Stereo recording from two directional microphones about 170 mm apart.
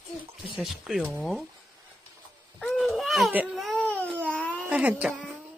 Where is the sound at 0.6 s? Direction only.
Centre (ahead or behind).